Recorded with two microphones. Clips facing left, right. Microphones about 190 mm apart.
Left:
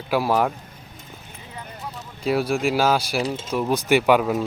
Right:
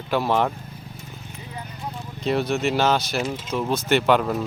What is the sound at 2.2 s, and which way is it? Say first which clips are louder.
Speech: left 1 dB; 10° left (ahead or behind).